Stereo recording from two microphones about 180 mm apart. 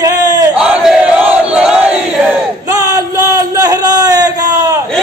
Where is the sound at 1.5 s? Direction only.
5° right (ahead or behind).